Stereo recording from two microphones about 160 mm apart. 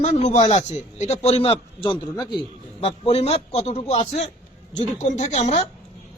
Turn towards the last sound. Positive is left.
turn(degrees=45)  # may be behind; listen again after turning